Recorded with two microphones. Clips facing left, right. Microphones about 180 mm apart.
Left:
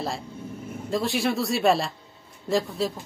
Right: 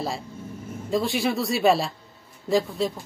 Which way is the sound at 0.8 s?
Centre (ahead or behind).